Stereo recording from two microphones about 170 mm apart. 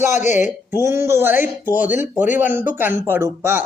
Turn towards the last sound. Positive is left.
turn(degrees=-15)  # may be behind; listen again after turning